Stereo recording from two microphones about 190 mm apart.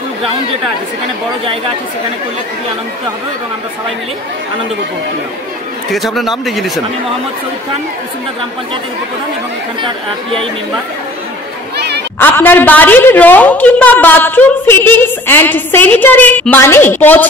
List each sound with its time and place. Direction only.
5.9 s speech: centre (ahead or behind)
12.2 s a woman's voice: 10° left (ahead or behind)